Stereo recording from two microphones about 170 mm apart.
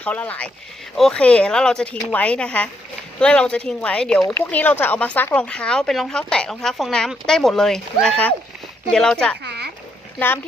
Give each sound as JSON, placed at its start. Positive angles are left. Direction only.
{"t": 0.0, "sound": "a woman's voice", "side_deg": 10}
{"t": 9.4, "sound": "a sound", "side_deg": -80}
{"t": 10.2, "sound": "a woman's voice", "side_deg": 10}